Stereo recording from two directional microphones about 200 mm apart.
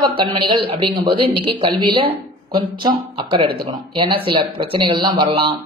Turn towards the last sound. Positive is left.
turn(degrees=-25)  # may be behind; listen again after turning